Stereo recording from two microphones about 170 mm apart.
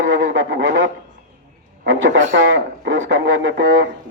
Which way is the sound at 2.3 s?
90° right.